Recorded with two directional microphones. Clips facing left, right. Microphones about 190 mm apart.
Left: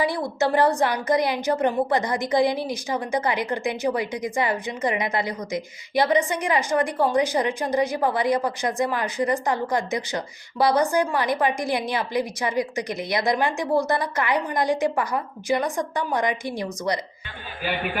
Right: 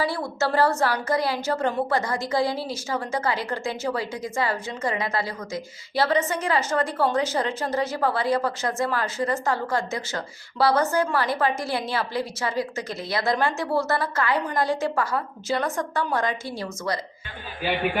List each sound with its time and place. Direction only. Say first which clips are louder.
0.0 s a woman's voice: left 2 dB; 15° left (ahead or behind)